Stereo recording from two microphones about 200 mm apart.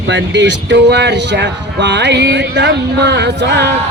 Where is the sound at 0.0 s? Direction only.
60° right (ahead or behind).